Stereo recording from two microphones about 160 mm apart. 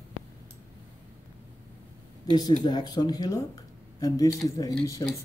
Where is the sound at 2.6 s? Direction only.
25° left (ahead or behind).